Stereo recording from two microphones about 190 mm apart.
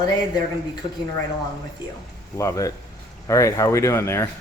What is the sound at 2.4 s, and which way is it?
Speech, 15° left (ahead or behind).